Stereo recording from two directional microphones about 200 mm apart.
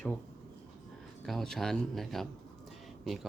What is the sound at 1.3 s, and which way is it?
Speech, 5° left (ahead or behind).